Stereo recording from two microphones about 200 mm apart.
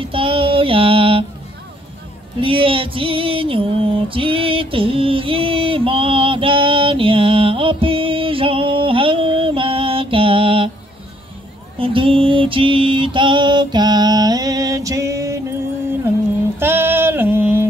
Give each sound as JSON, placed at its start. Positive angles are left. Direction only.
{"t": 0.0, "sound": "child singing", "side_deg": -25}
{"t": 2.4, "sound": "music", "side_deg": -25}
{"t": 11.8, "sound": "mantra", "side_deg": -25}
{"t": 16.5, "sound": "a sound", "side_deg": -10}